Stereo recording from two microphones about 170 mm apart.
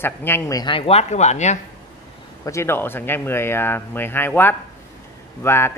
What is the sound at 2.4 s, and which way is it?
A man's voice, 15° left (ahead or behind).